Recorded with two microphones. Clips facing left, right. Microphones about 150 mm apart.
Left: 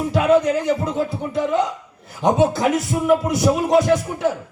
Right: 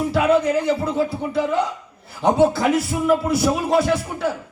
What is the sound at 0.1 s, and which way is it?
A man's voice, 20° left (ahead or behind).